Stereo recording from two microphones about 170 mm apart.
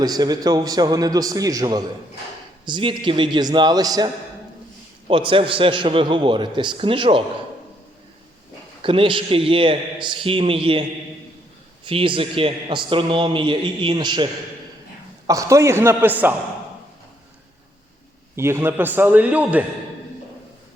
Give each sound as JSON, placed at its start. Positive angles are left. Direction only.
{"t": 0.0, "sound": "a man's voice", "side_deg": -25}
{"t": 8.8, "sound": "a man's voice", "side_deg": -30}
{"t": 11.9, "sound": "a man's voice", "side_deg": -30}
{"t": 15.3, "sound": "a man's voice", "side_deg": -20}
{"t": 18.3, "sound": "a man's voice", "side_deg": -15}